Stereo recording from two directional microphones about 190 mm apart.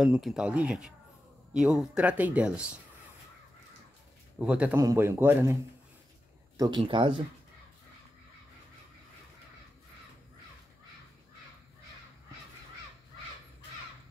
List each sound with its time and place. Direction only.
0.0 s speech: 5° right (ahead or behind)
4.5 s a man's voice: 5° right (ahead or behind); by 7.2 s 25° right (ahead or behind)